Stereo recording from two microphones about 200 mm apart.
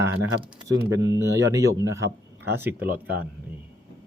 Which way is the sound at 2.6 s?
10° right (ahead or behind).